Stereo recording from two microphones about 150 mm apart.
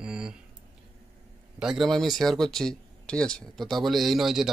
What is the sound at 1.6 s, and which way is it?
Speech, centre (ahead or behind).